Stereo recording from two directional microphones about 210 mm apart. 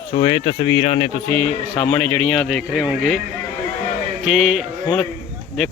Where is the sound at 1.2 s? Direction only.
25° right (ahead or behind).